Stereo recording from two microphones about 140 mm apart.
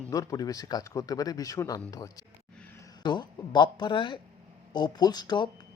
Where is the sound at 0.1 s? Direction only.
25° left (ahead or behind).